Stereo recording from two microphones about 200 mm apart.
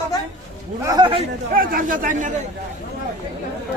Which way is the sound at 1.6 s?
45° right (ahead or behind).